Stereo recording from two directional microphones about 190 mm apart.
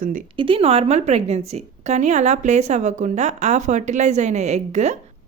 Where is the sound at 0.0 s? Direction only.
45° right (ahead or behind).